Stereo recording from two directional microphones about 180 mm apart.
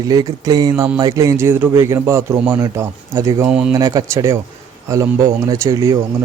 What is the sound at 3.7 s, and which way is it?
Speech, 20° right (ahead or behind).